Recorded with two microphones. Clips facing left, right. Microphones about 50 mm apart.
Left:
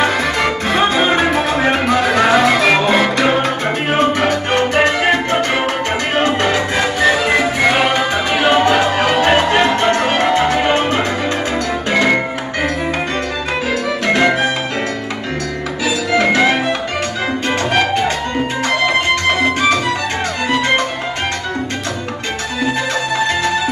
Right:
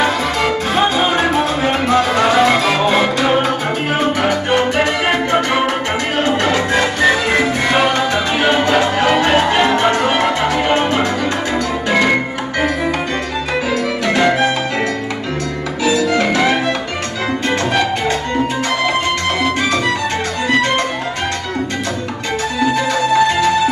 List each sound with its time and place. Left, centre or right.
1.9 s music: centre
6.4 s music: left
16.2 s music: left